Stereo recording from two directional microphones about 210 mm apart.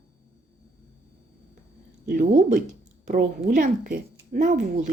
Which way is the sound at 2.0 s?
45° right (ahead or behind).